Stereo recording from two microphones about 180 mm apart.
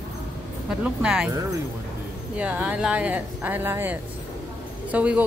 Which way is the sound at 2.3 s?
5° right (ahead or behind).